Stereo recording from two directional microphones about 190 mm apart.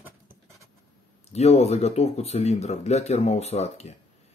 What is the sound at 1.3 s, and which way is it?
Speech, 35° left (ahead or behind).